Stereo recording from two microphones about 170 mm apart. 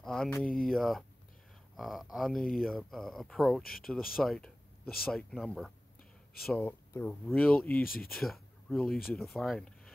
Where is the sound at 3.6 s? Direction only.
60° left (ahead or behind).